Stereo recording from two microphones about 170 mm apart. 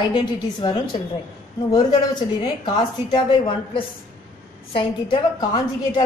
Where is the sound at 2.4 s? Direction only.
25° left (ahead or behind).